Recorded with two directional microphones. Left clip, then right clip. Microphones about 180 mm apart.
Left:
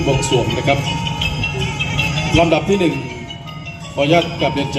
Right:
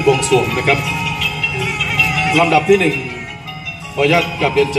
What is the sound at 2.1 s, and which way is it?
Speech, 15° right (ahead or behind).